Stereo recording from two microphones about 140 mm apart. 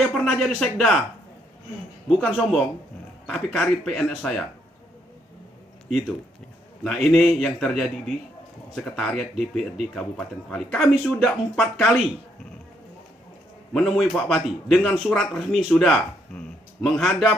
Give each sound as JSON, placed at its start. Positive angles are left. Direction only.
{"t": 0.0, "sound": "a man's voice", "side_deg": 0}
{"t": 2.0, "sound": "a man's voice", "side_deg": 0}
{"t": 6.8, "sound": "a man's voice", "side_deg": 0}
{"t": 8.7, "sound": "a man's voice", "side_deg": 5}
{"t": 13.7, "sound": "a man's voice", "side_deg": 0}